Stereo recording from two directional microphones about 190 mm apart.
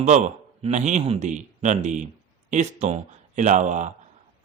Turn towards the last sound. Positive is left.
turn(degrees=-40)  # may be behind; listen again after turning